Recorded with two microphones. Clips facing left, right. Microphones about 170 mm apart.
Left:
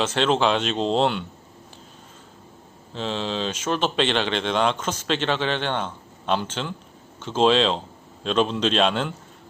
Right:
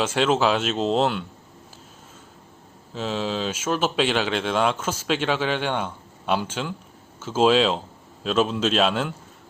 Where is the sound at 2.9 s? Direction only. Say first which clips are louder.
Right 1 dB; 5° right (ahead or behind).